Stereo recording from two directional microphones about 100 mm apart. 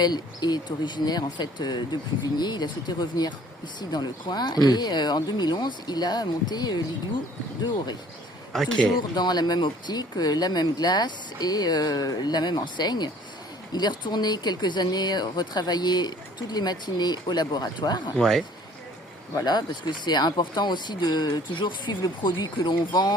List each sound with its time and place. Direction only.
0.0 s speech: 45° left (ahead or behind)
8.5 s a man's voice: 5° left (ahead or behind)
9.0 s speech: 45° left (ahead or behind)
18.2 s a man's voice: 5° left (ahead or behind)
19.4 s speech: 45° left (ahead or behind)